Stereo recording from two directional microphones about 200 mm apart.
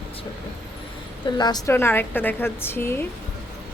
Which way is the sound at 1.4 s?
20° left (ahead or behind).